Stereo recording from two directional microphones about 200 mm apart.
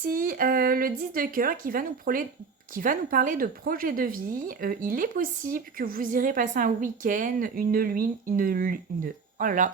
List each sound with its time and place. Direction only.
0.0 s speech: 45° right (ahead or behind)